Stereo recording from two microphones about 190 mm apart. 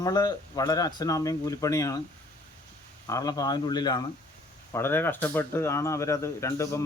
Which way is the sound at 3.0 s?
20° left (ahead or behind).